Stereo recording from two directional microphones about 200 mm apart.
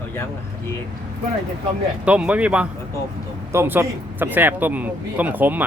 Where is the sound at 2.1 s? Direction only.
5° right (ahead or behind).